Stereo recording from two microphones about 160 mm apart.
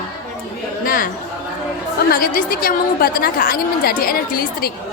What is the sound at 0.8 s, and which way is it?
Speech, 60° left (ahead or behind).